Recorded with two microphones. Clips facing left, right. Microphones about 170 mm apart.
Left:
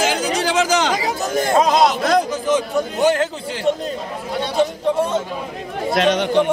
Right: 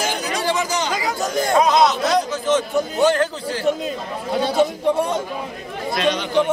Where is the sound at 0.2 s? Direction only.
90° left.